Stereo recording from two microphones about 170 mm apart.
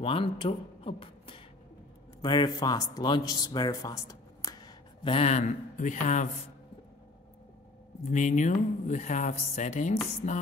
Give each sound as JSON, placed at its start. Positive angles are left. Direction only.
{"t": 0.0, "sound": "speech", "side_deg": 30}
{"t": 8.0, "sound": "speech", "side_deg": 45}
{"t": 10.2, "sound": "music", "side_deg": 40}